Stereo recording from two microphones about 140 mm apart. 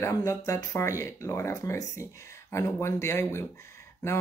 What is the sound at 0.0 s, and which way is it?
Speech, 20° left (ahead or behind).